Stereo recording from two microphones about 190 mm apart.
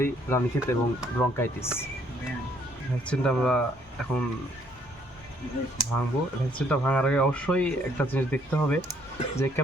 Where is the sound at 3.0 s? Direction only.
5° left (ahead or behind).